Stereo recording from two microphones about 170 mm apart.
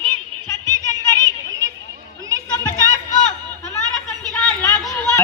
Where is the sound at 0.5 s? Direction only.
25° right (ahead or behind).